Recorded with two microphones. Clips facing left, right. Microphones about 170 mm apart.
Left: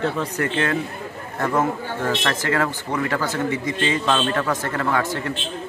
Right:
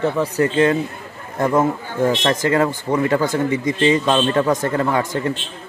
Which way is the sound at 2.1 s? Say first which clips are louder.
Right 4 dB; 15° right (ahead or behind).